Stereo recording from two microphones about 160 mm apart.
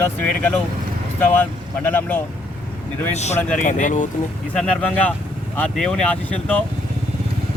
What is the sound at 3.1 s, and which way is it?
Speech, 45° left (ahead or behind).